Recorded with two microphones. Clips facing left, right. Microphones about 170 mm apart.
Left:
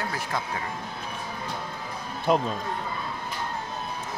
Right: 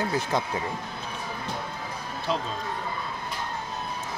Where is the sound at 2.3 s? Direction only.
50° left (ahead or behind).